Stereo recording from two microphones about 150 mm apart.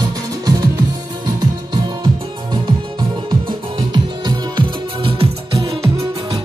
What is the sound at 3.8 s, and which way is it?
Music, 35° right (ahead or behind).